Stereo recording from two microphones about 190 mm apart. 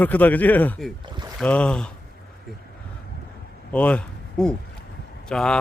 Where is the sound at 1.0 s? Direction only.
25° right (ahead or behind).